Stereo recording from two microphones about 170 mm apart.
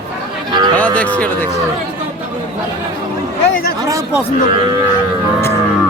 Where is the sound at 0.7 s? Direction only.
10° left (ahead or behind).